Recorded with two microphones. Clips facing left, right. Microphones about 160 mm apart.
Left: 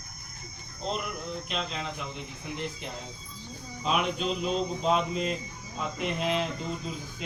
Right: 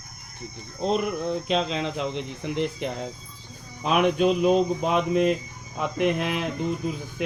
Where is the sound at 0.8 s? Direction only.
75° right (ahead or behind).